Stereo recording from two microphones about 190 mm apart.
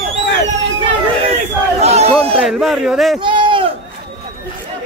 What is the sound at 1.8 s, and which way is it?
Speech, 35° right (ahead or behind).